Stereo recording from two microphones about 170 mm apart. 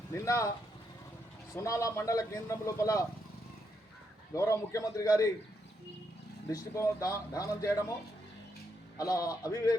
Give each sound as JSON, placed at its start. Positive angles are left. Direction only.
{"t": 0.1, "sound": "speech", "side_deg": 20}
{"t": 1.5, "sound": "speech", "side_deg": 20}
{"t": 4.4, "sound": "speech", "side_deg": 20}
{"t": 6.5, "sound": "speech", "side_deg": 20}
{"t": 9.0, "sound": "speech", "side_deg": 20}